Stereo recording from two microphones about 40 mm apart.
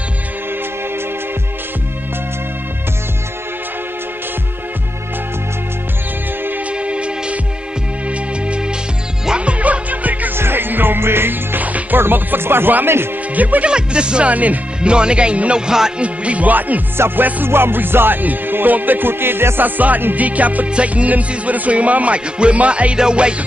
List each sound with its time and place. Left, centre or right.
6.7 s music: right
10.3 s music: right
11.6 s music: right
12.0 s music: right
13.3 s speech: right
13.7 s speech: right
14.3 s music: right
14.8 s speech: right
15.6 s speech: centre
16.0 s music: right
16.9 s music: right
20.2 s music: right
22.9 s speech: right